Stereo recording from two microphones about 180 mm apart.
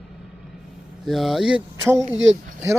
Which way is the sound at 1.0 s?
Centre (ahead or behind).